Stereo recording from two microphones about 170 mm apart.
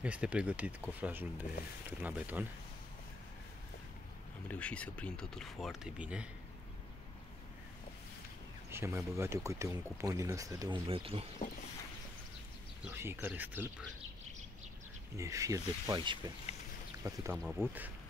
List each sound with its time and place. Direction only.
0.0 s speech: 5° right (ahead or behind)
4.5 s speech: 5° left (ahead or behind)
8.6 s speech: 15° right (ahead or behind)
10.9 s speech: 35° right (ahead or behind)
12.8 s speech: 15° right (ahead or behind)
15.1 s speech: 20° right (ahead or behind)
16.5 s a sound: 40° left (ahead or behind)
17.0 s speech: 20° right (ahead or behind)